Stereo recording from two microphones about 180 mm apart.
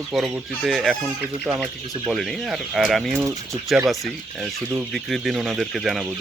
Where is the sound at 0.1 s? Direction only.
Centre (ahead or behind).